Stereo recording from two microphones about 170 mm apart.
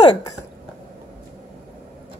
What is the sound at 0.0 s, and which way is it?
Speech, 25° left (ahead or behind).